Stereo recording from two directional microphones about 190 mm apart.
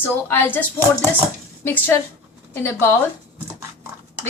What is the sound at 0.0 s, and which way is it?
Speech, 10° left (ahead or behind).